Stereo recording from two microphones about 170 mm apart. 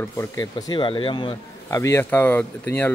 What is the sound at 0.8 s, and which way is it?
A man's voice, 30° left (ahead or behind).